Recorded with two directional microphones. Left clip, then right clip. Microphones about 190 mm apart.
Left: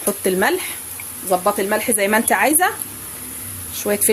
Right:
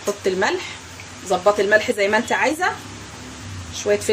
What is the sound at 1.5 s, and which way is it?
Speech, 35° left (ahead or behind).